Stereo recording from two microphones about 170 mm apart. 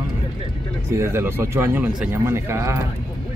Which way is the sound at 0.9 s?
15° right (ahead or behind).